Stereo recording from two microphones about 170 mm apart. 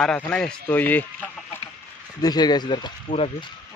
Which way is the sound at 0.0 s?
5° left (ahead or behind).